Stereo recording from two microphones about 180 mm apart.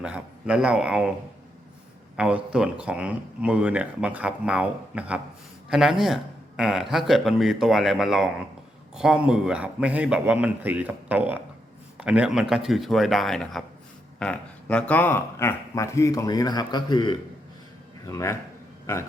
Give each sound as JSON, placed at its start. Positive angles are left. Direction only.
{"t": 0.0, "sound": "speech", "side_deg": -5}
{"t": 2.1, "sound": "speech", "side_deg": -5}